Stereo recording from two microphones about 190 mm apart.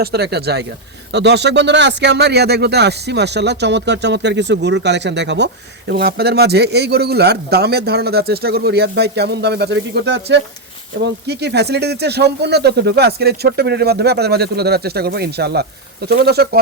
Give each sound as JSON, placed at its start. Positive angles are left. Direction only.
{"t": 0.0, "sound": "speech", "side_deg": -60}